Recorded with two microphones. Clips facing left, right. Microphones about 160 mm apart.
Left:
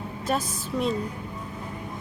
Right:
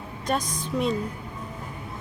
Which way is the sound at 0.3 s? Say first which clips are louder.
Right 1 dB; 5° left (ahead or behind).